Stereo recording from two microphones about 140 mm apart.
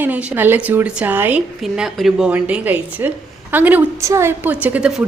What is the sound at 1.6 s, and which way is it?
A woman's voice, centre (ahead or behind).